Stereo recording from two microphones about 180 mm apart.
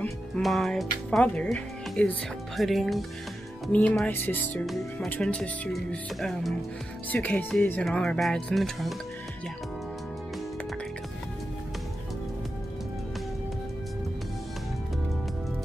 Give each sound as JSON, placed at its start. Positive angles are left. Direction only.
{"t": 0.4, "sound": "speech", "side_deg": 0}